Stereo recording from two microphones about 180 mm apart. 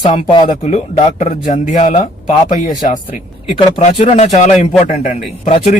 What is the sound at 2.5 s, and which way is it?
Speech, 25° left (ahead or behind).